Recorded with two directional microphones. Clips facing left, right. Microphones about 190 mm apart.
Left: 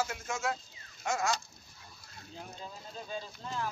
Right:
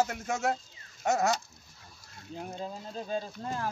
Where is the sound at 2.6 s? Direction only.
45° right (ahead or behind).